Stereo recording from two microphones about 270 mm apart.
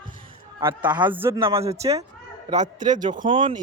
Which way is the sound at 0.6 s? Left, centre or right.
Centre.